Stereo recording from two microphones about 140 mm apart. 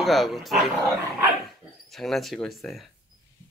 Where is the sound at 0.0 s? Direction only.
Centre (ahead or behind).